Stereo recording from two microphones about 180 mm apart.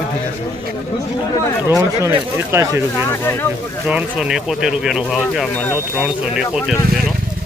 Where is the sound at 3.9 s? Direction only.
5° right (ahead or behind).